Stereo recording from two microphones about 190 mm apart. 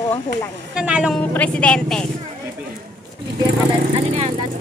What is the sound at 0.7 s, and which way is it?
Speech, 5° right (ahead or behind).